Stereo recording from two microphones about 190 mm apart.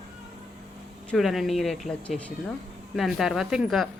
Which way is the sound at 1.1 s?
Centre (ahead or behind).